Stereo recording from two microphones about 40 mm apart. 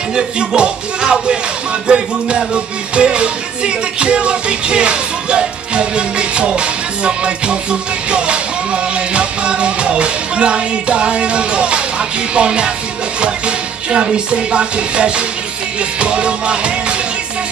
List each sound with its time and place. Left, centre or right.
0.1 s music: right